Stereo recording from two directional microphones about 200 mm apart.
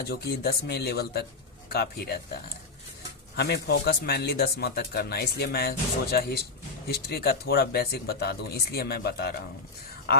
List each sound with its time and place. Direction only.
0.0 s speech: 50° left (ahead or behind)